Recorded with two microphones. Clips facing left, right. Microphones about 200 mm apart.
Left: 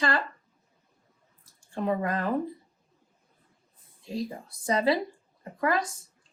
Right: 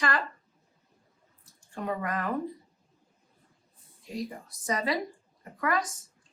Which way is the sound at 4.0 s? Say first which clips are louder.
Left 3 dB; 30° left (ahead or behind).